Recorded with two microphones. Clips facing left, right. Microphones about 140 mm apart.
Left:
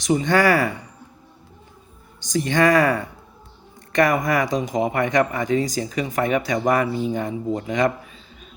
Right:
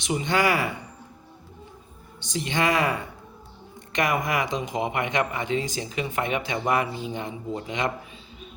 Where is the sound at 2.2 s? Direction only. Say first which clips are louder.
Left 7 dB; 45° left (ahead or behind).